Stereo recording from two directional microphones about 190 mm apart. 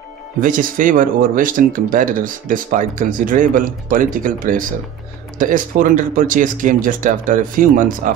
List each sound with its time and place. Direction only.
0.4 s speech: 45° right (ahead or behind)